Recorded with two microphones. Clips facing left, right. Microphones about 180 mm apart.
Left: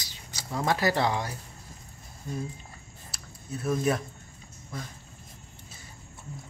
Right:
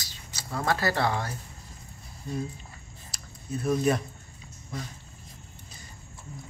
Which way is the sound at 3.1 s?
Centre (ahead or behind).